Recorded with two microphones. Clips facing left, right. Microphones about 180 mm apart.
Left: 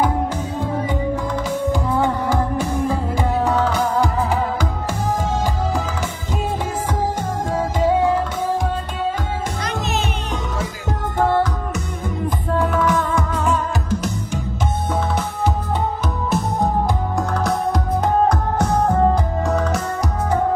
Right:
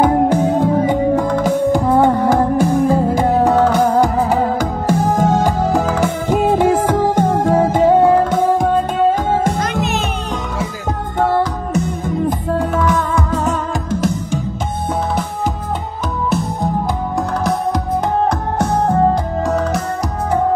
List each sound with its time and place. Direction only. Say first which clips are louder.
0.0 s music: right 8 dB; 60° right (ahead or behind)
13.3 s music: right 2 dB; 40° right (ahead or behind)